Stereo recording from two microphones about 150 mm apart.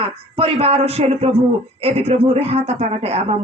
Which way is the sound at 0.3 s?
40° right (ahead or behind).